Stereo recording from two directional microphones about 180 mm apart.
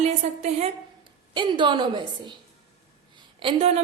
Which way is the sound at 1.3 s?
25° right (ahead or behind).